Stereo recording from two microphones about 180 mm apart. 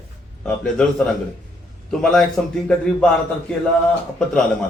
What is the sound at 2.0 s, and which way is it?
Speech, centre (ahead or behind).